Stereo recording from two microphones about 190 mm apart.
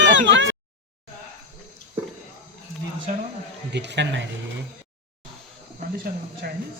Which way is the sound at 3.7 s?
65° right (ahead or behind).